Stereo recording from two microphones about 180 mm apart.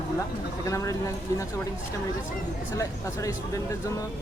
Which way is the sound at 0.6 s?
15° left (ahead or behind).